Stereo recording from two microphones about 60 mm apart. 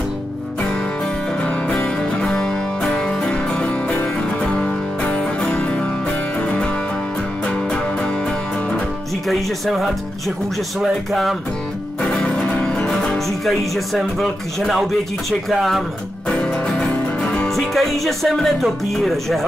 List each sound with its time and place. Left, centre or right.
2.2 s music: centre
9.3 s speech: centre
12.1 s music: centre
13.9 s speech: centre
16.3 s music: centre
17.6 s speech: centre